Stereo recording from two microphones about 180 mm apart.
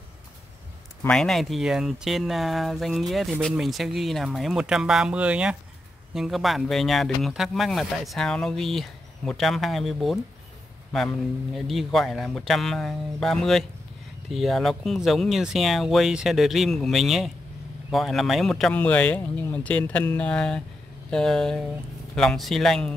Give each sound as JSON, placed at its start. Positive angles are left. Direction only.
{"t": 1.0, "sound": "speech", "side_deg": 0}